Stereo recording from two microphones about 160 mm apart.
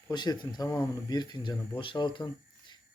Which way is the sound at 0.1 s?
25° left (ahead or behind).